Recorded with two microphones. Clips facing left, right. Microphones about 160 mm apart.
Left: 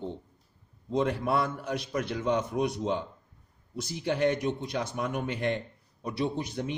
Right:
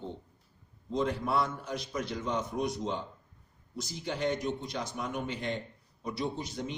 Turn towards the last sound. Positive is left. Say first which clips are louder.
# left 4 dB
turn(degrees=60)  # may be behind; listen again after turning